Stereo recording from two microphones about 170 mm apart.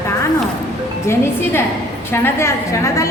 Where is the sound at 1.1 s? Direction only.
15° left (ahead or behind).